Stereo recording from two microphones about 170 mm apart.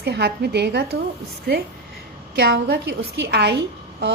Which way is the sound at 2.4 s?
70° right (ahead or behind).